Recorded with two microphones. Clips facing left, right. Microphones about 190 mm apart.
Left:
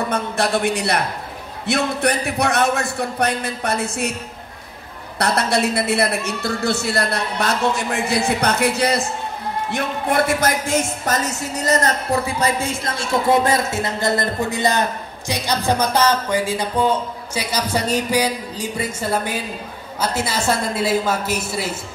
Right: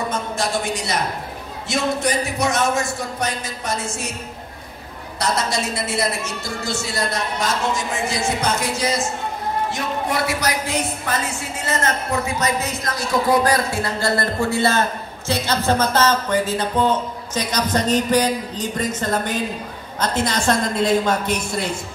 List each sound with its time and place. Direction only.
0.1 s a woman's voice: 60° left (ahead or behind)
5.2 s a woman's voice: 60° left (ahead or behind); by 21.7 s 5° left (ahead or behind)